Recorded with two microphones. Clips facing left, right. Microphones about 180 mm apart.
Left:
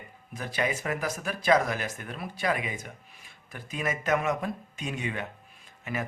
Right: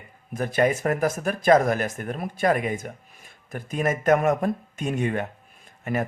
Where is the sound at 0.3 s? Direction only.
50° right (ahead or behind).